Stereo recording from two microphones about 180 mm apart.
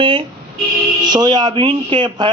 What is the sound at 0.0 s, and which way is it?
A man's voice, 30° right (ahead or behind).